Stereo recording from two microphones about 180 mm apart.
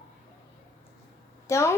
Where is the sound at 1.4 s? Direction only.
15° left (ahead or behind).